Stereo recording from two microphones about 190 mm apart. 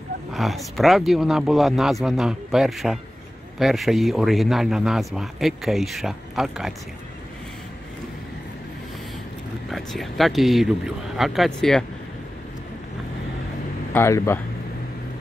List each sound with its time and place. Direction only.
0.3 s speech: centre (ahead or behind)
9.7 s speech: centre (ahead or behind)
13.9 s speech: 15° left (ahead or behind)